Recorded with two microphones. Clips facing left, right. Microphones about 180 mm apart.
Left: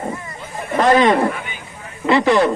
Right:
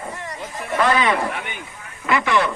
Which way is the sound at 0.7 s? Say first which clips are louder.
Left 6 dB; 40° left (ahead or behind).